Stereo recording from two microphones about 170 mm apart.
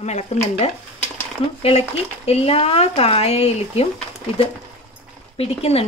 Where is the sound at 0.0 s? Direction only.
40° left (ahead or behind).